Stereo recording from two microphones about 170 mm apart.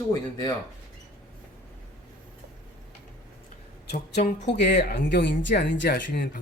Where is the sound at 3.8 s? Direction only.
70° left (ahead or behind).